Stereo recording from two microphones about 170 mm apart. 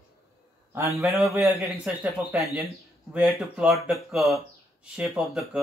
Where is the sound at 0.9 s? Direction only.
15° right (ahead or behind).